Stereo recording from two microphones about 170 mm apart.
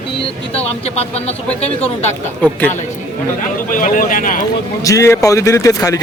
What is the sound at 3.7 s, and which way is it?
Speech, 50° left (ahead or behind).